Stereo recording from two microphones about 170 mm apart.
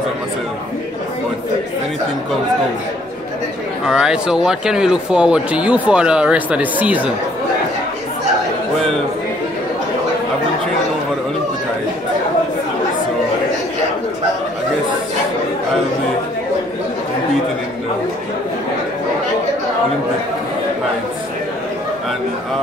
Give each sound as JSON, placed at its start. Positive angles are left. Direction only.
{"t": 3.8, "sound": "speech", "side_deg": -5}